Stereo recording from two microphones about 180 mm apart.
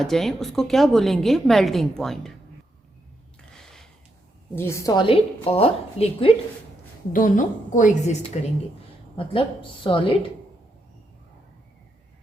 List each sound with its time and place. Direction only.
0.0 s a woman's voice: centre (ahead or behind)
3.5 s a sound: centre (ahead or behind)
4.5 s a woman's voice: 15° left (ahead or behind); by 6.3 s 30° left (ahead or behind)
7.1 s a woman's voice: 50° left (ahead or behind); by 10.2 s 30° left (ahead or behind)